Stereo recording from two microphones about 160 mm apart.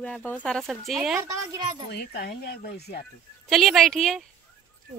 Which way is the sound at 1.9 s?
75° left (ahead or behind).